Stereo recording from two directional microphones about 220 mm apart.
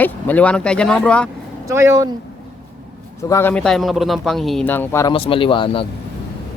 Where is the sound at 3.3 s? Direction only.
10° left (ahead or behind).